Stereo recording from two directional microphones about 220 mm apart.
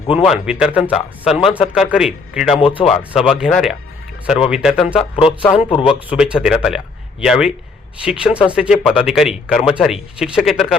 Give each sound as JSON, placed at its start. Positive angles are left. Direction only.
{"t": 0.1, "sound": "speech", "side_deg": -5}
{"t": 2.6, "sound": "speech", "side_deg": 25}
{"t": 2.8, "sound": "speech", "side_deg": -5}
{"t": 5.1, "sound": "speech", "side_deg": 25}
{"t": 6.1, "sound": "speech", "side_deg": -5}